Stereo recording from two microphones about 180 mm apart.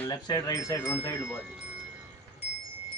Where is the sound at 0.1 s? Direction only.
20° left (ahead or behind).